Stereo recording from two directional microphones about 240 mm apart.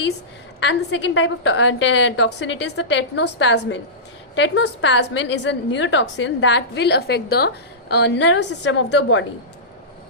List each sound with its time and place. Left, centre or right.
0.6 s a woman's voice: left